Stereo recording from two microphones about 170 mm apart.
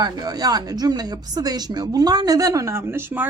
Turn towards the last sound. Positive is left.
turn(degrees=-15)  # may be behind; listen again after turning